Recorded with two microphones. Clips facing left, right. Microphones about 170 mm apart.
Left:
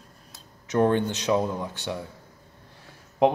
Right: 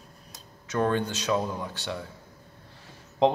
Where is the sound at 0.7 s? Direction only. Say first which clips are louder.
Left 4 dB; 20° left (ahead or behind).